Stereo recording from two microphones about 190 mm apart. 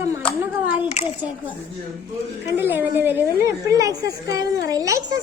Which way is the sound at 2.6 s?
10° right (ahead or behind).